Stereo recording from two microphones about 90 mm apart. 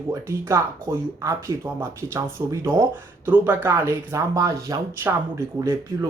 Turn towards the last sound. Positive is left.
turn(degrees=-30)  # may be behind; listen again after turning